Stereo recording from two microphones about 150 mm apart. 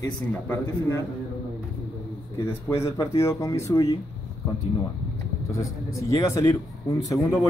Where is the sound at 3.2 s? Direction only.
20° left (ahead or behind).